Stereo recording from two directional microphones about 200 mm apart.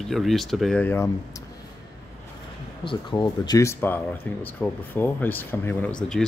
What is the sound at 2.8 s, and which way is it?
Speech, 25° left (ahead or behind).